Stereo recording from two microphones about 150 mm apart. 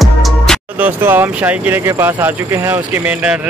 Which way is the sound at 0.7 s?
10° right (ahead or behind).